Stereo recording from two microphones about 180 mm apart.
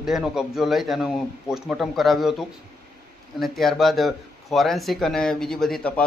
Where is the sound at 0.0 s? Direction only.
Centre (ahead or behind).